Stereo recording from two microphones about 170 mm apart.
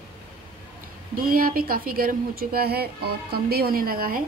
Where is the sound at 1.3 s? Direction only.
55° right (ahead or behind).